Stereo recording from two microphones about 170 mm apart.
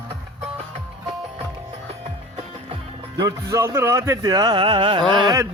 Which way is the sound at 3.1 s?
20° right (ahead or behind).